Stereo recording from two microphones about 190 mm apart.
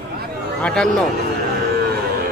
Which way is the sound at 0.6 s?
5° left (ahead or behind).